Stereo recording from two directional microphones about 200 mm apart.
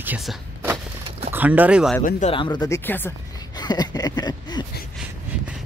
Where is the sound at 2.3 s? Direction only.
25° left (ahead or behind).